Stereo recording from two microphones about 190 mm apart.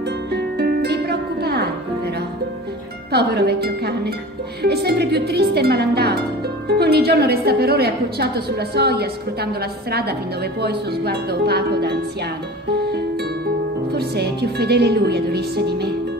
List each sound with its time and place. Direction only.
0.3 s music: 60° right (ahead or behind)
3.1 s a woman's voice: 60° right (ahead or behind)
12.9 s music: 55° right (ahead or behind)
13.9 s a woman's voice: 60° right (ahead or behind)